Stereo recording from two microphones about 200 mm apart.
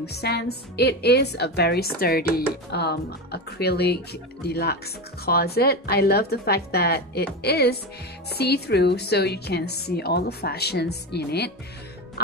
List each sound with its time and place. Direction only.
0.0 s a woman's voice: 55° left (ahead or behind)